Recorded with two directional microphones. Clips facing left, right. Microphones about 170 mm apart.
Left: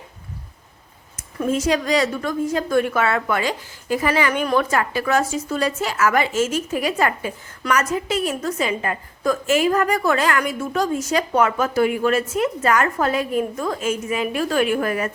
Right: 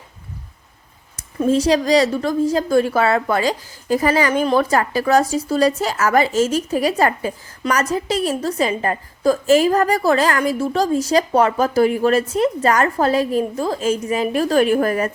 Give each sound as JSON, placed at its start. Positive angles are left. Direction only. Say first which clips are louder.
{"t": 1.4, "sound": "a woman's voice", "louder": "right 4 dB", "side_deg": -35}